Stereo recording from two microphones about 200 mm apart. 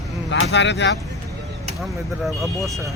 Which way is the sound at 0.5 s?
60° left (ahead or behind).